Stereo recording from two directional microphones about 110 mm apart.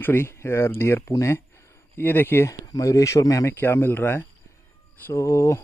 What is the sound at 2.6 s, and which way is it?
Speech, 30° left (ahead or behind).